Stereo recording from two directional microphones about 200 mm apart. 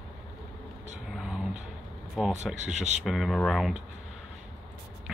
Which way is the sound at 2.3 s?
35° right (ahead or behind).